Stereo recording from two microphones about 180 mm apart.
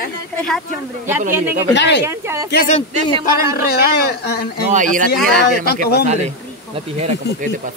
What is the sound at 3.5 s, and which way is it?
Speech, 65° left (ahead or behind).